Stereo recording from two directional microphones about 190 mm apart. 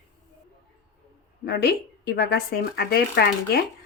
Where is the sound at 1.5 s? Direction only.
60° left (ahead or behind).